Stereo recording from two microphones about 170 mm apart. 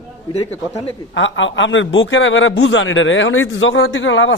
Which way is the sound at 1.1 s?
90° left.